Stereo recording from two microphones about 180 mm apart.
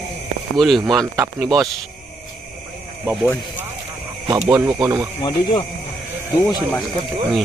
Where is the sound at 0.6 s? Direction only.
Centre (ahead or behind).